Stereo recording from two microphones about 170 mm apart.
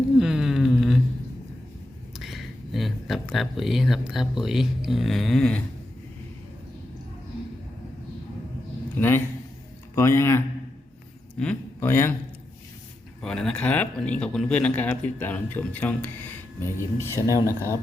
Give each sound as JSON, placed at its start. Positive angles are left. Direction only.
{"t": 0.2, "sound": "a sound", "side_deg": -5}
{"t": 2.1, "sound": "speech", "side_deg": 0}
{"t": 9.0, "sound": "a man's voice", "side_deg": 15}
{"t": 13.2, "sound": "speech", "side_deg": 5}